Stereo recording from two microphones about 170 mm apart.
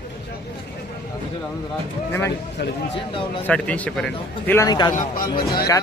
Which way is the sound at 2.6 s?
80° left.